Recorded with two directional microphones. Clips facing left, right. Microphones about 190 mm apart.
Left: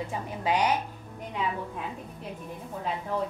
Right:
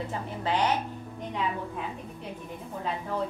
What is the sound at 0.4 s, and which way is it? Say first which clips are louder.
Speech: left 1 dB; 10° left (ahead or behind).